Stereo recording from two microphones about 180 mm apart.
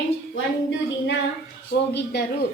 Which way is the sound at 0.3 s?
90° left.